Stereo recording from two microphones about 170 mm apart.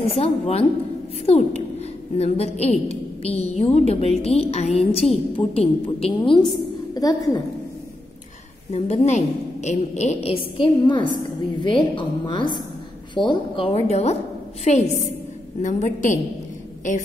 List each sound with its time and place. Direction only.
0.0 s a woman's voice: 35° left (ahead or behind)
6.9 s a woman's voice: 20° left (ahead or behind)
8.7 s a woman's voice: 40° left (ahead or behind)